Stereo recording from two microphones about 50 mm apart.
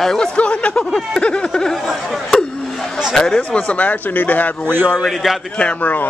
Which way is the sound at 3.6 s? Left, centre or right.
Left.